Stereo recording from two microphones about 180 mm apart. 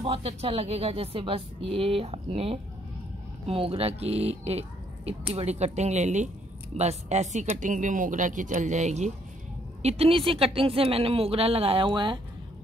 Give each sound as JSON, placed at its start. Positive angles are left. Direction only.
{"t": 0.0, "sound": "speech", "side_deg": -30}